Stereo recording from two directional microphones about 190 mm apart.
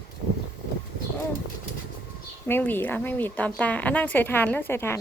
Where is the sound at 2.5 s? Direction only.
10° left (ahead or behind).